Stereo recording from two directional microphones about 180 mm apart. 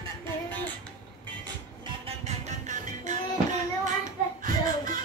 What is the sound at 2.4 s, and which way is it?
Music, 40° right (ahead or behind).